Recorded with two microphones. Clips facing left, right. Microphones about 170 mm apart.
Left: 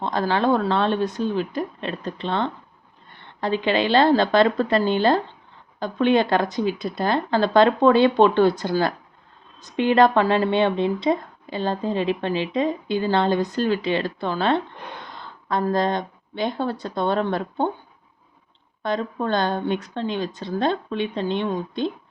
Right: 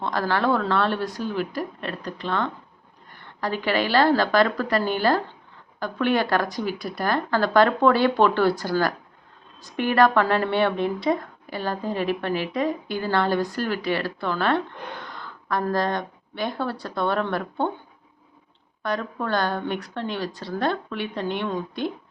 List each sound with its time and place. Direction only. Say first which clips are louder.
0.0 s a woman's voice: left 2 dB; 20° left (ahead or behind)
18.8 s a woman's voice: left 3 dB; 20° left (ahead or behind)